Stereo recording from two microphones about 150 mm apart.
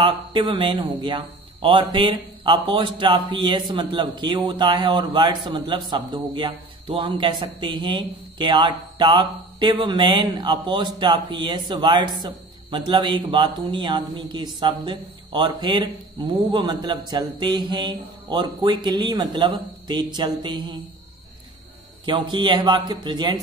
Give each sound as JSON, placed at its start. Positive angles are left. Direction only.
{"t": 0.0, "sound": "speech", "side_deg": -35}
{"t": 22.0, "sound": "speech", "side_deg": -35}